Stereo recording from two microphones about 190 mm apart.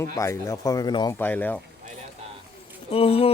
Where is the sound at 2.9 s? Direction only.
30° left (ahead or behind).